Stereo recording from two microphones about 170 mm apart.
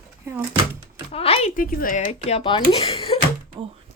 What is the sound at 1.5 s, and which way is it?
Speech, 55° left (ahead or behind).